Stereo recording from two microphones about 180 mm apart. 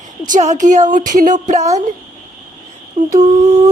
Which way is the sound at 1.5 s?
40° right (ahead or behind).